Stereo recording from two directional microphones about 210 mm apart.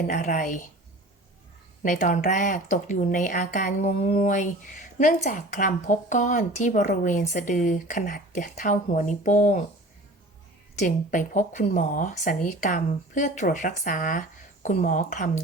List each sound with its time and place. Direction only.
0.1 s speech: 35° left (ahead or behind)
1.8 s speech: 35° left (ahead or behind)
10.8 s speech: 35° left (ahead or behind)